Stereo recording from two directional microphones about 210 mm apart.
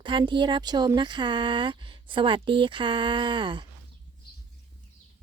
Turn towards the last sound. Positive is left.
turn(degrees=-25)  # may be behind; listen again after turning